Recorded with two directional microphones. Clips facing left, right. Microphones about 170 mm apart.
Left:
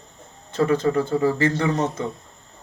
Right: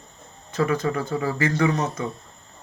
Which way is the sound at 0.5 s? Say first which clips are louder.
Left 4 dB; 30° left (ahead or behind).